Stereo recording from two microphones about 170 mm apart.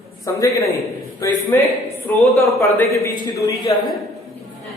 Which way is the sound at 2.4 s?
15° left (ahead or behind).